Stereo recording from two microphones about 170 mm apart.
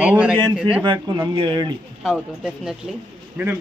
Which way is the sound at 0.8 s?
30° right (ahead or behind).